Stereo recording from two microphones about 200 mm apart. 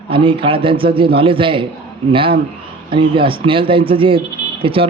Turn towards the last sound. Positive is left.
turn(degrees=-25)  # may be behind; listen again after turning